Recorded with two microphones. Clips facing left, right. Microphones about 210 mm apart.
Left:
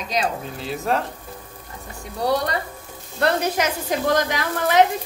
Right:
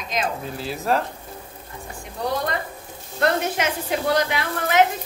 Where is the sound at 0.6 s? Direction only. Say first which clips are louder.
Even; centre (ahead or behind).